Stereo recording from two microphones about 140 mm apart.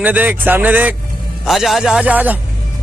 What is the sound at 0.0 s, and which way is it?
A man's voice, 10° right (ahead or behind).